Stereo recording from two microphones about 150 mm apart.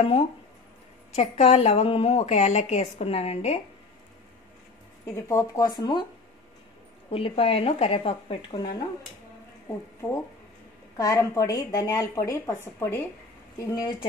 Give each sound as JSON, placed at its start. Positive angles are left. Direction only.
{"t": 0.0, "sound": "a woman's voice", "side_deg": 40}
{"t": 5.0, "sound": "a woman's voice", "side_deg": 20}
{"t": 7.1, "sound": "speech", "side_deg": 40}
{"t": 11.0, "sound": "a woman's voice", "side_deg": 25}